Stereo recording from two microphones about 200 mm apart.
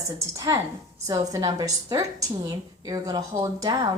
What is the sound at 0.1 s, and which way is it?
A woman's voice, 15° right (ahead or behind).